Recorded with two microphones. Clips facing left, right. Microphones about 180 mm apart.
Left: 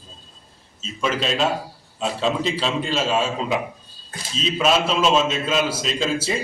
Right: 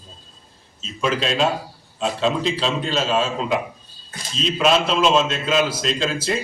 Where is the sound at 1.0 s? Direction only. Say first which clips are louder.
Right 2 dB; centre (ahead or behind).